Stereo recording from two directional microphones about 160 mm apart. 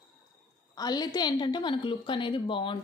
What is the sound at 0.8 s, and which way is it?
A woman's voice, 25° left (ahead or behind).